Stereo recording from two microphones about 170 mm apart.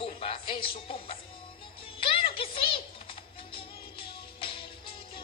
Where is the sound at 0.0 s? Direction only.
35° left (ahead or behind).